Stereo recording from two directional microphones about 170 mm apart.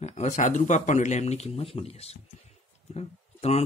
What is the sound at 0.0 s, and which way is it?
Speech, 40° left (ahead or behind).